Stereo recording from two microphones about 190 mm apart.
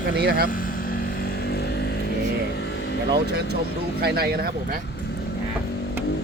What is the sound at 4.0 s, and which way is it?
Speech, 55° right (ahead or behind).